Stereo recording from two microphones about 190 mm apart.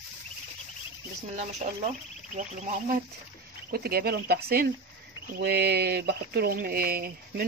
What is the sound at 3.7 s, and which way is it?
Speech, 55° right (ahead or behind).